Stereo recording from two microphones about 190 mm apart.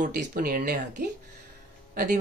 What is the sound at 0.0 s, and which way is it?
Speech, 45° right (ahead or behind).